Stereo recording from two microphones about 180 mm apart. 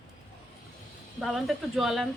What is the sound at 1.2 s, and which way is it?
Speech, centre (ahead or behind).